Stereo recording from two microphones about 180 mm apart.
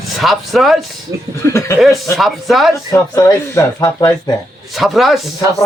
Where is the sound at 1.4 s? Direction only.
15° left (ahead or behind).